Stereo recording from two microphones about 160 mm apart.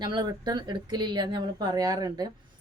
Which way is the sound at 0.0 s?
25° right (ahead or behind).